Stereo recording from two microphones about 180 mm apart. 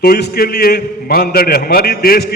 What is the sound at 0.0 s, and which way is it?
A man's voice, 60° left (ahead or behind).